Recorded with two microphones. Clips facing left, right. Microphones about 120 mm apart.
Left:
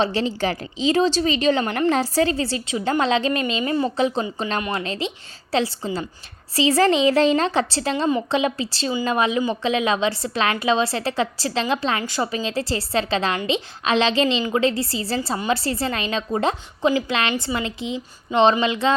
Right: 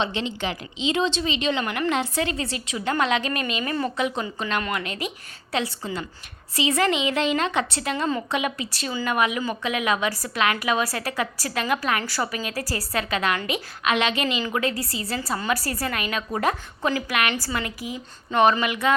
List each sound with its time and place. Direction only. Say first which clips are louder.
0.0 s a woman's voice: left 5 dB; 40° left (ahead or behind)